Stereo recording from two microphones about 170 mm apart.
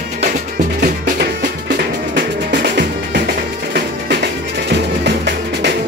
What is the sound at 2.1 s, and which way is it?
Music, 70° right (ahead or behind).